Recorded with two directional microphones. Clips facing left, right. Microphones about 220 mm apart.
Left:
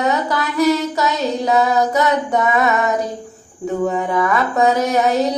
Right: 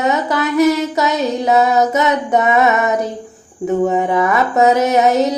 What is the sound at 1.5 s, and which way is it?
Female singing, 20° right (ahead or behind).